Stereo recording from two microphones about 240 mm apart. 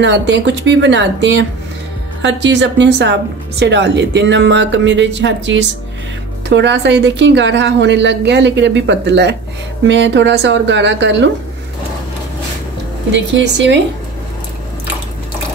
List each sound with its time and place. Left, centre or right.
0.0 s speech: right
13.1 s speech: right